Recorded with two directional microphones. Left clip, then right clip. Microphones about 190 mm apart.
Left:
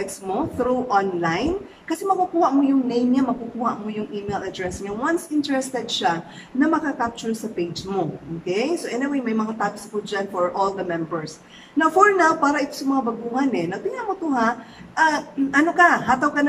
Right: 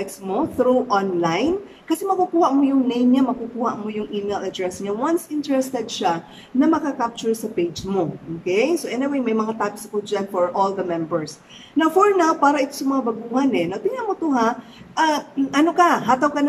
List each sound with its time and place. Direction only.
0.0 s a woman's voice: 15° right (ahead or behind)